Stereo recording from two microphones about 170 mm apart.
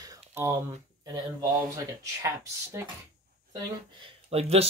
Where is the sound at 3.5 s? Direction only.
35° right (ahead or behind).